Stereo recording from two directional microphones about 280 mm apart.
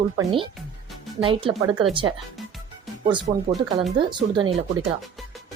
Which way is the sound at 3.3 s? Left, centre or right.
Right.